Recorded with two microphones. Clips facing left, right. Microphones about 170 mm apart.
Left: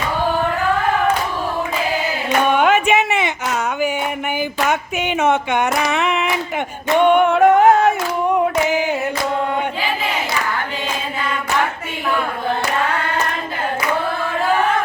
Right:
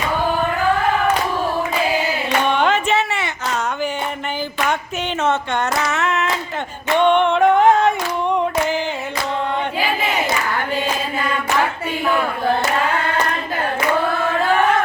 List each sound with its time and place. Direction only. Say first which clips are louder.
2.5 s music: left 3 dB; 10° left (ahead or behind)
5.2 s speech: left 3 dB; 10° left (ahead or behind)
7.0 s a capella: left 2 dB; 10° left (ahead or behind)